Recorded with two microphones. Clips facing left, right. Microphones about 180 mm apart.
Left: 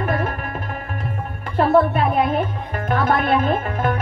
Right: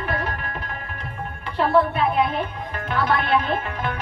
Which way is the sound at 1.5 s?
45° left (ahead or behind).